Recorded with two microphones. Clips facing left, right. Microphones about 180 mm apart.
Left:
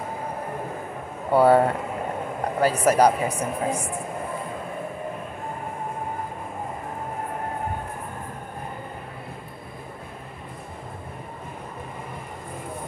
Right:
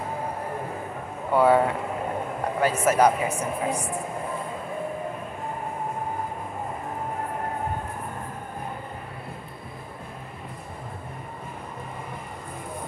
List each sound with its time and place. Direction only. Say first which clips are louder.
1.3 s speech: left 2 dB; 35° left (ahead or behind)